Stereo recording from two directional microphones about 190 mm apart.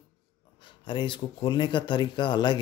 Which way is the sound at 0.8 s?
25° left (ahead or behind).